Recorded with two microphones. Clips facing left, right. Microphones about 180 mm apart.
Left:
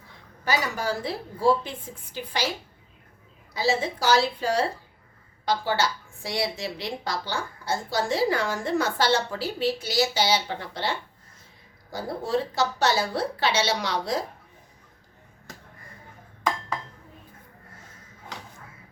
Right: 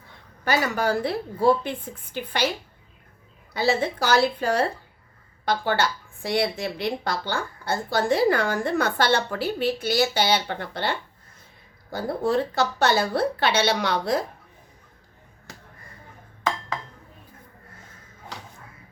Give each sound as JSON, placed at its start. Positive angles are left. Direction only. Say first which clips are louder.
{"t": 0.4, "sound": "a woman's voice", "louder": "right 4 dB", "side_deg": -60}
{"t": 3.5, "sound": "a woman's voice", "louder": "right 2 dB", "side_deg": -60}